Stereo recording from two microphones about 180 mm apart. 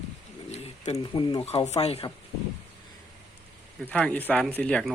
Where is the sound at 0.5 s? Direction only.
35° left (ahead or behind).